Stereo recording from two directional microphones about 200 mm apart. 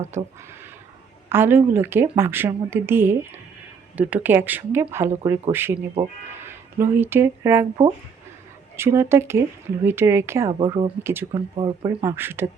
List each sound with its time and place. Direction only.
1.3 s speech: 10° right (ahead or behind)
8.7 s speech: 10° right (ahead or behind)
11.0 s speech: 10° right (ahead or behind)
11.3 s speech: 25° right (ahead or behind)
11.9 s speech: 10° right (ahead or behind)